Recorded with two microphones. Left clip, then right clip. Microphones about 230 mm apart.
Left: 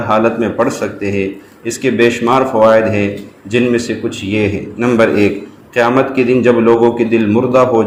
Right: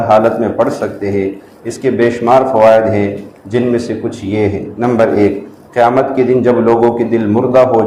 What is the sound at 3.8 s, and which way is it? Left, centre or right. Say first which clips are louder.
Speech: even; left.